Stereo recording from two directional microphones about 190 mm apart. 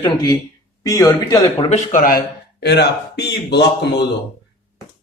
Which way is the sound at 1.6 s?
40° left (ahead or behind).